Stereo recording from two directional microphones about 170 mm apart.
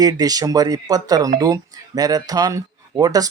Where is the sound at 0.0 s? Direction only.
20° right (ahead or behind).